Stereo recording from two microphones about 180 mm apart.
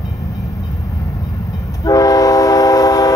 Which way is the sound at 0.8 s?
15° left (ahead or behind).